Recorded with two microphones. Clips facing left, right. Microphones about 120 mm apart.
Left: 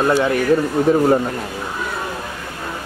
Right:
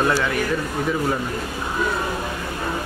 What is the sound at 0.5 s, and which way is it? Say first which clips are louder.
Speech: left 8 dB; 40° left (ahead or behind).